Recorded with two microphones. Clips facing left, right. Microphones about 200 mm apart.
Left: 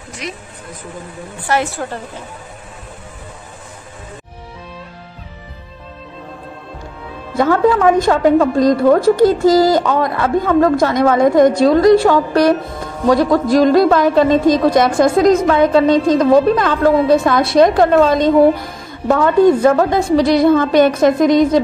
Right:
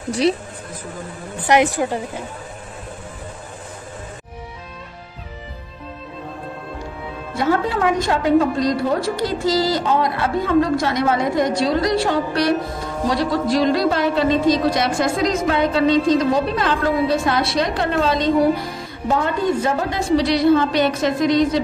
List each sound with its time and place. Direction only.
0.1 s speech: 30° right (ahead or behind)
1.5 s a woman's voice: 15° right (ahead or behind)
7.3 s a woman's voice: 50° left (ahead or behind)
19.0 s a woman's voice: 60° left (ahead or behind)